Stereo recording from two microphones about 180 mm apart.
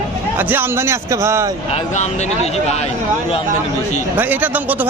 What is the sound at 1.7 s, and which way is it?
Speech, 40° left (ahead or behind).